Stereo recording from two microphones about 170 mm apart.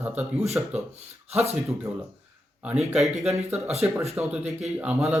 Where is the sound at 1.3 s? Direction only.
40° right (ahead or behind).